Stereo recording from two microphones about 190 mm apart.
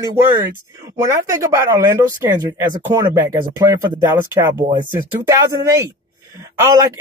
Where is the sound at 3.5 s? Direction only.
20° right (ahead or behind).